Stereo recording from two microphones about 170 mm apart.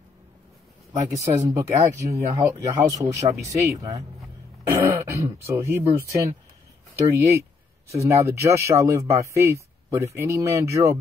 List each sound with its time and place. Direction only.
1.0 s speech: 20° right (ahead or behind)